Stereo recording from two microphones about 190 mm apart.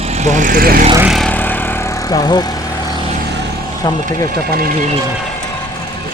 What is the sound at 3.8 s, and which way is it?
Speech, 20° left (ahead or behind).